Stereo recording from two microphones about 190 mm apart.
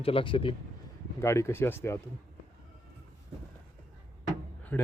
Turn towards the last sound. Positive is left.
turn(degrees=10)  # may be behind; listen again after turning